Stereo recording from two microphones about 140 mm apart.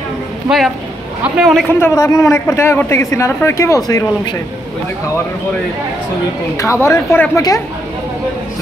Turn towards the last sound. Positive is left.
turn(degrees=25)  # may be behind; listen again after turning